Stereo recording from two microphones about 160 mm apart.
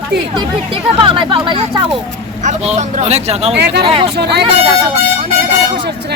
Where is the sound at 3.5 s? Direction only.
90° right.